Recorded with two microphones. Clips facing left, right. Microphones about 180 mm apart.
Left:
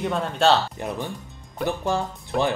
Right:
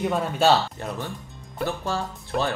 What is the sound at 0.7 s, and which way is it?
Speech, 15° left (ahead or behind).